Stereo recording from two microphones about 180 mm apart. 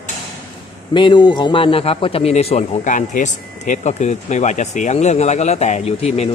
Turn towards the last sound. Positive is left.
turn(degrees=35)  # may be behind; listen again after turning